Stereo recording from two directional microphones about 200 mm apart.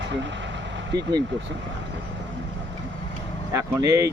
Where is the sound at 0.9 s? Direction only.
20° right (ahead or behind).